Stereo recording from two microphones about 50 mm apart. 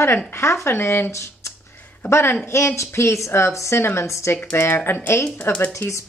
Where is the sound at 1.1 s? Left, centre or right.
Left.